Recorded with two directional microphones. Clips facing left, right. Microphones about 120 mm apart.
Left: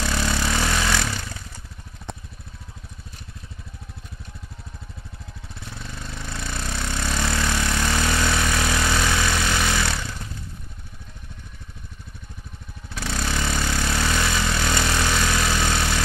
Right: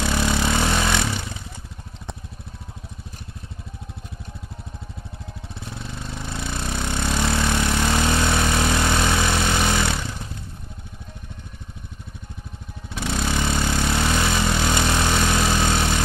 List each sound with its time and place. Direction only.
0.0 s vehicle: 20° right (ahead or behind)
5.8 s a sound: 25° right (ahead or behind)
12.9 s vehicle: 20° right (ahead or behind)